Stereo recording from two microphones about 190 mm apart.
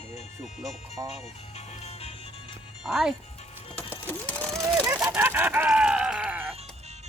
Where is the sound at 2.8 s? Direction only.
5° right (ahead or behind).